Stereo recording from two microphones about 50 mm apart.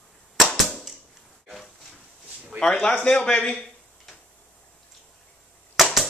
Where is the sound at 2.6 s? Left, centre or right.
Centre.